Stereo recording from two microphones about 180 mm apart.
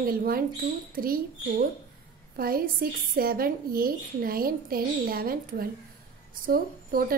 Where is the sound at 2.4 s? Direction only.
55° right (ahead or behind).